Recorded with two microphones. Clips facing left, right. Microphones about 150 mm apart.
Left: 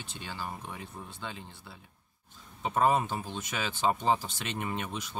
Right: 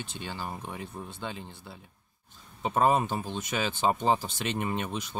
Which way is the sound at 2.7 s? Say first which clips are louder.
Right 2 dB; 25° right (ahead or behind).